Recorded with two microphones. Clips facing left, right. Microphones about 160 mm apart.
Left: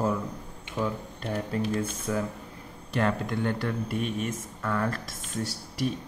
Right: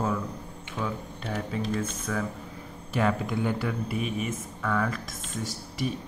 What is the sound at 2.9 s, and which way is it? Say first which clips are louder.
Speech: right 1 dB; 5° right (ahead or behind).